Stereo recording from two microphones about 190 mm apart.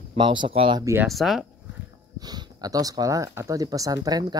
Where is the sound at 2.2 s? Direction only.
20° right (ahead or behind).